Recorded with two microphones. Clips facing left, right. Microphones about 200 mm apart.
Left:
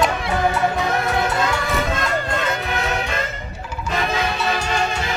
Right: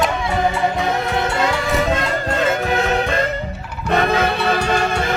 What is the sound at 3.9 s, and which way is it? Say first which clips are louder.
Music: right 6 dB; 60° right (ahead or behind).